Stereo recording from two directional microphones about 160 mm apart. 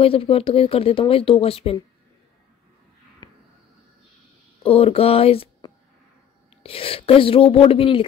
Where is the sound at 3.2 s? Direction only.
25° left (ahead or behind).